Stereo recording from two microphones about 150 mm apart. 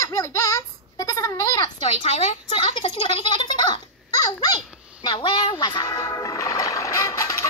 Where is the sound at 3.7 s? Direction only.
25° left (ahead or behind).